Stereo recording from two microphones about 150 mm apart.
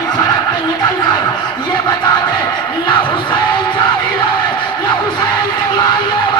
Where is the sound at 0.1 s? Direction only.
30° left (ahead or behind).